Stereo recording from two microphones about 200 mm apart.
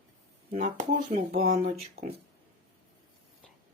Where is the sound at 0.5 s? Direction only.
35° right (ahead or behind).